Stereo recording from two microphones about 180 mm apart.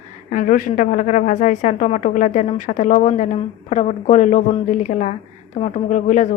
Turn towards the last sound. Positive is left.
turn(degrees=40)  # may be behind; listen again after turning